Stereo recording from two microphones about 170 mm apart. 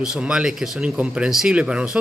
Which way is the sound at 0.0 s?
5° right (ahead or behind).